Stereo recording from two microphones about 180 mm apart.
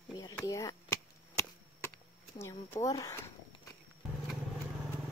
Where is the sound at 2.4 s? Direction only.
15° left (ahead or behind).